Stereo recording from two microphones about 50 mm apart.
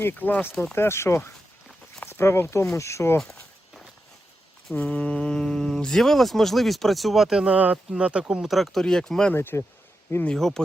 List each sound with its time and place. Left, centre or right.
0.1 s speech: left
0.8 s speech: left
2.7 s speech: left
3.2 s walk: centre
4.7 s speech: left; by 7.3 s centre
7.3 s speech: right
8.4 s speech: centre
9.3 s speech: left
10.3 s speech: centre